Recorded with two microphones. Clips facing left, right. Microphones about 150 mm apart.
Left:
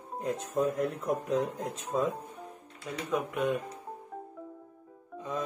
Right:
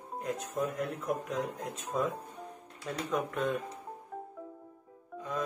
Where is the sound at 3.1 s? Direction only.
10° left (ahead or behind).